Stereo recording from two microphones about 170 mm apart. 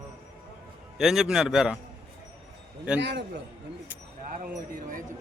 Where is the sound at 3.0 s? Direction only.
90° right.